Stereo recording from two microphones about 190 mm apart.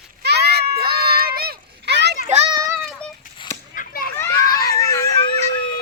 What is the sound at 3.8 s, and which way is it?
Children playing, 50° left (ahead or behind).